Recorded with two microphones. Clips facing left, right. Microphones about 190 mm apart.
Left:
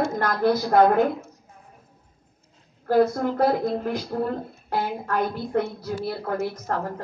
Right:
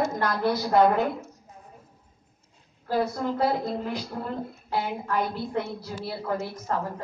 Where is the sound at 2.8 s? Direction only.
50° left (ahead or behind).